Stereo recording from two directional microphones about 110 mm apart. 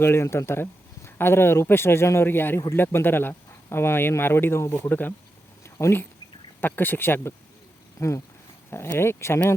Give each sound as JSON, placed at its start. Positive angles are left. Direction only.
{"t": 0.0, "sound": "speech", "side_deg": 25}